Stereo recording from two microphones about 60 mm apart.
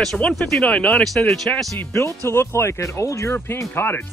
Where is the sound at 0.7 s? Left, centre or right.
Left.